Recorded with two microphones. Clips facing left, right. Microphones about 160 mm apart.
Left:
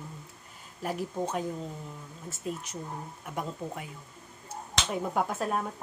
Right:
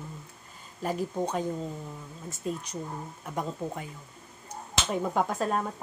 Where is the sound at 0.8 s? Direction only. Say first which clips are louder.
Right 2 dB; 5° left (ahead or behind).